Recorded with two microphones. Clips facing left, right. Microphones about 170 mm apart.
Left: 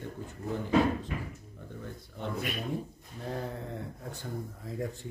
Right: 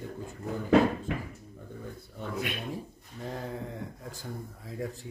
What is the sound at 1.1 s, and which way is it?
Speech, 85° right.